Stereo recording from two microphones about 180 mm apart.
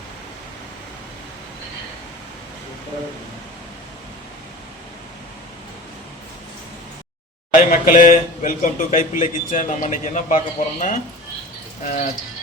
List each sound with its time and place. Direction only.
7.5 s speech: 45° left (ahead or behind)